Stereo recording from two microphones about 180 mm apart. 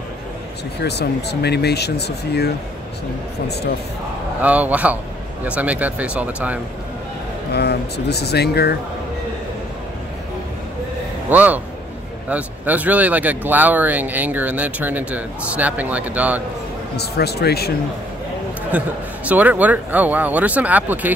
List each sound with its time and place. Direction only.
0.8 s speech: 65° left (ahead or behind)
4.4 s speech: 10° right (ahead or behind)
7.5 s speech: 65° left (ahead or behind)
11.2 s speech: 10° right (ahead or behind)
16.9 s speech: 65° left (ahead or behind)
18.7 s speech: 10° right (ahead or behind)